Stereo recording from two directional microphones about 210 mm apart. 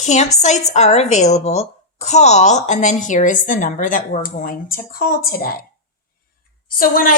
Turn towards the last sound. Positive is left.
turn(degrees=45)  # may be behind; listen again after turning